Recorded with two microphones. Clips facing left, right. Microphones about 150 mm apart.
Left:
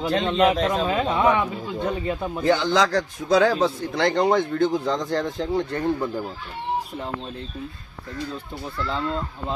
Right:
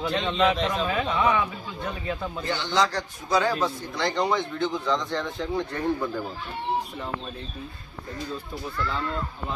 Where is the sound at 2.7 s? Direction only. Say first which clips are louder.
Left 4 dB; 90° left.